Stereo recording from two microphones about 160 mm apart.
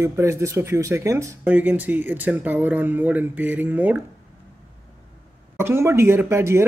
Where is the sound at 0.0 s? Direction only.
15° right (ahead or behind).